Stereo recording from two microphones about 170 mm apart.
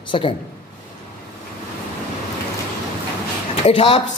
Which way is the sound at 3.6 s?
30° left (ahead or behind).